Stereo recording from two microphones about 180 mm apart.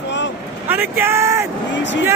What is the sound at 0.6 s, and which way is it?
Vehicle, 10° right (ahead or behind).